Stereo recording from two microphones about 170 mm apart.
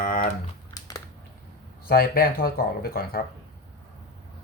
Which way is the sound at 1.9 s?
60° left (ahead or behind).